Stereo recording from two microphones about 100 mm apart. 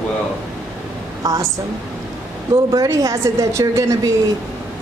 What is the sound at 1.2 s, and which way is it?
Speech, 35° right (ahead or behind).